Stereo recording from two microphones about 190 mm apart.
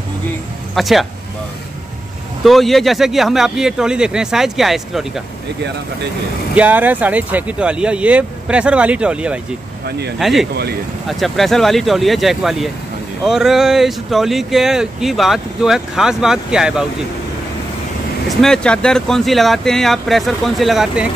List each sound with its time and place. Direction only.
0.7 s speech: centre (ahead or behind)
2.4 s speech: centre (ahead or behind)
6.5 s speech: 10° right (ahead or behind)
9.8 s speech: 60° right (ahead or behind)
10.1 s speech: centre (ahead or behind)
10.5 s speech: 55° right (ahead or behind)
11.1 s speech: centre (ahead or behind)
18.4 s speech: 5° left (ahead or behind)